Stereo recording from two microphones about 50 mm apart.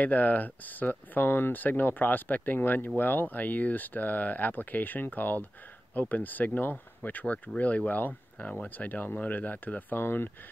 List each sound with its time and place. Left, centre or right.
0.0 s speech: left